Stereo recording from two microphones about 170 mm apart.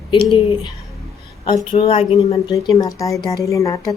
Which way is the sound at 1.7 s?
35° left (ahead or behind).